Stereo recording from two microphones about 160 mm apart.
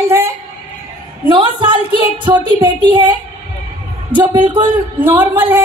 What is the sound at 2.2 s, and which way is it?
Speech, 30° right (ahead or behind).